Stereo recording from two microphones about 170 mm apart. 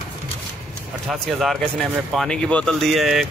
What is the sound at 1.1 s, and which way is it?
Speech, centre (ahead or behind).